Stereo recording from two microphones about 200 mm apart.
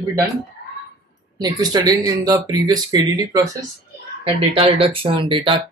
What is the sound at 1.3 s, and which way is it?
Speech, 20° right (ahead or behind).